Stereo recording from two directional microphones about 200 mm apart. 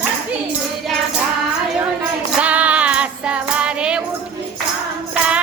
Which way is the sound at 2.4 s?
5° right (ahead or behind).